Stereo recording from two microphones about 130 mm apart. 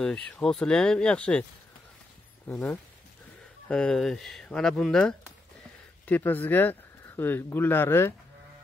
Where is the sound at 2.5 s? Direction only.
10° left (ahead or behind).